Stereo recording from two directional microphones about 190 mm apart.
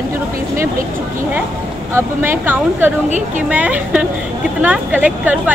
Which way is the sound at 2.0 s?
10° right (ahead or behind).